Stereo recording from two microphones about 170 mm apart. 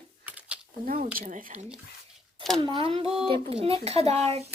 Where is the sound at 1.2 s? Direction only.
45° right (ahead or behind).